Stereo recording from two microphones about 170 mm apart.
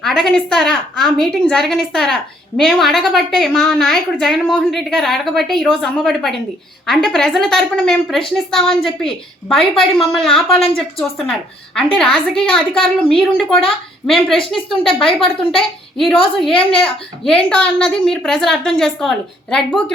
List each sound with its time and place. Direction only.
0.0 s a woman's voice: 5° left (ahead or behind)
16.5 s a woman's voice: 30° left (ahead or behind)
16.8 s a woman's voice: 5° left (ahead or behind)